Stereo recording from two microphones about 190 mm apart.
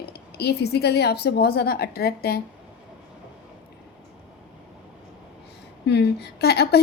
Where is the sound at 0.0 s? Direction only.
60° left (ahead or behind).